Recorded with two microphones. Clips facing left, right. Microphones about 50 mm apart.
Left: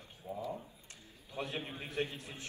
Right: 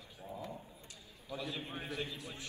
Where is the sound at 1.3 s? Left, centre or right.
Left.